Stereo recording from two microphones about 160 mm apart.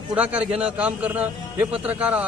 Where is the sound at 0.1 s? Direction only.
10° right (ahead or behind).